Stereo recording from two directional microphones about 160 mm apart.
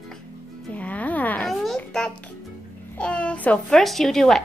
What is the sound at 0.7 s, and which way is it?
A child's voice, 10° left (ahead or behind).